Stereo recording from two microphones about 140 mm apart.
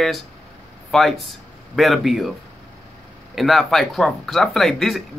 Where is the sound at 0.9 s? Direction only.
Centre (ahead or behind).